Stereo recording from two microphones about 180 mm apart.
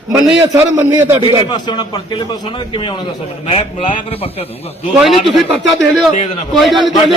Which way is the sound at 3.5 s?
35° left (ahead or behind).